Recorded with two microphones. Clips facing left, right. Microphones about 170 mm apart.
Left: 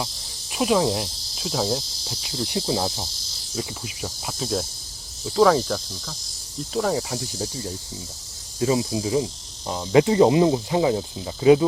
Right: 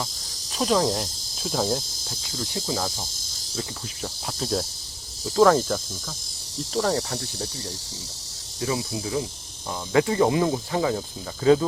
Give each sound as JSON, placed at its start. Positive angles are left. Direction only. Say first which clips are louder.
{"t": 0.5, "sound": "speech", "louder": "left 2 dB", "side_deg": 10}
{"t": 2.6, "sound": "speech", "louder": "left 3 dB", "side_deg": 25}
{"t": 3.5, "sound": "cricket", "louder": "left 3 dB", "side_deg": 10}
{"t": 8.6, "sound": "speech", "louder": "left 6 dB", "side_deg": 25}